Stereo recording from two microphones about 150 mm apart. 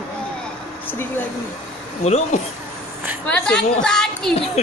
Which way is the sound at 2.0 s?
45° left (ahead or behind).